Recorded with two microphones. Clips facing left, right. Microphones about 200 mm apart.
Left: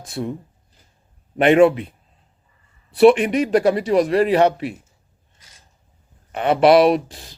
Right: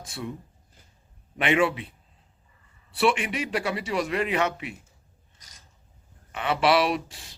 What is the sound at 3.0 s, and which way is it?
A man's voice, 40° left (ahead or behind).